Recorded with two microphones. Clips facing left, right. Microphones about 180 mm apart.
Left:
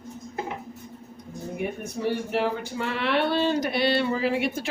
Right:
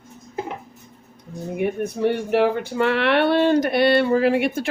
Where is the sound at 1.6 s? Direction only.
65° right (ahead or behind).